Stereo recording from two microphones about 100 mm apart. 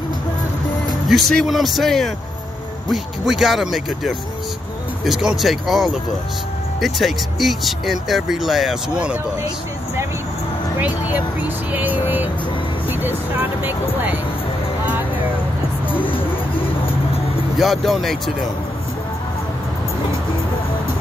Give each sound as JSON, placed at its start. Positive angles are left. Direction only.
{"t": 1.0, "sound": "speech", "side_deg": 0}
{"t": 10.8, "sound": "speech", "side_deg": -15}
{"t": 16.5, "sound": "music", "side_deg": 65}
{"t": 17.6, "sound": "speech", "side_deg": 0}